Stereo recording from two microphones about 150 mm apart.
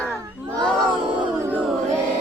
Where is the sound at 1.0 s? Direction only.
30° right (ahead or behind).